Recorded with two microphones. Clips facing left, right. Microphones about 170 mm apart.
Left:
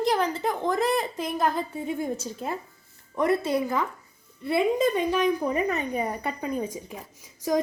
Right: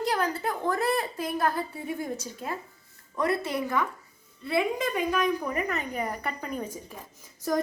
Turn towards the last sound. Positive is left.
turn(degrees=15)  # may be behind; listen again after turning